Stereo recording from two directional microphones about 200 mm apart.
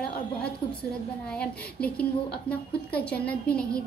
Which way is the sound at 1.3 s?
5° left (ahead or behind).